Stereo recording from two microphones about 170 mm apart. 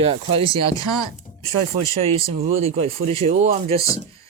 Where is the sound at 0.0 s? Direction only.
35° right (ahead or behind).